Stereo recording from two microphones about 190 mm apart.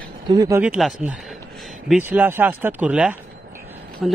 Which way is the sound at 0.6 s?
5° right (ahead or behind).